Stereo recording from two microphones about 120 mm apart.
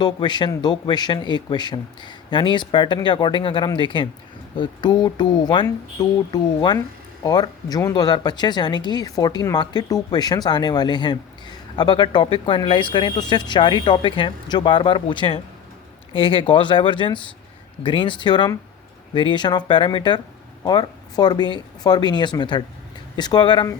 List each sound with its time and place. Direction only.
0.0 s speech: 40° left (ahead or behind)